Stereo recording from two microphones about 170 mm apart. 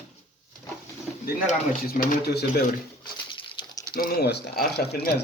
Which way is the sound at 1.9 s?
65° left (ahead or behind).